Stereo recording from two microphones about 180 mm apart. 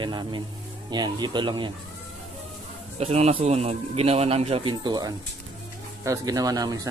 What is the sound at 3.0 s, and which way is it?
A man's voice, 35° right (ahead or behind).